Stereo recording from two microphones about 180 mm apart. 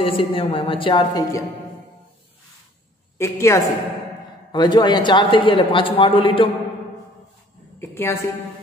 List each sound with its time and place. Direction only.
0.0 s a man's voice: 30° left (ahead or behind)
3.2 s a woman's voice: 15° left (ahead or behind)
7.8 s a woman's voice: 15° left (ahead or behind)